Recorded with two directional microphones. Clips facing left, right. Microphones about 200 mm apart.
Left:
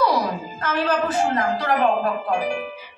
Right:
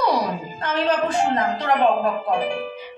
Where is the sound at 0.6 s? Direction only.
25° right (ahead or behind).